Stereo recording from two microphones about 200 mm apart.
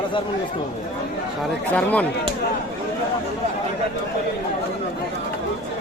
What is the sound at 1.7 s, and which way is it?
Speech, 5° left (ahead or behind).